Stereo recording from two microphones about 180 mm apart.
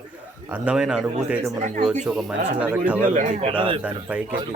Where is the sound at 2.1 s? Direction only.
Centre (ahead or behind).